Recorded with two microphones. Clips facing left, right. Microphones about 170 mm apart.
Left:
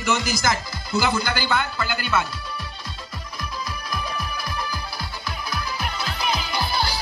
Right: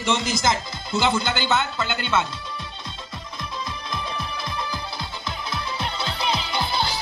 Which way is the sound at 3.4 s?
25° right (ahead or behind).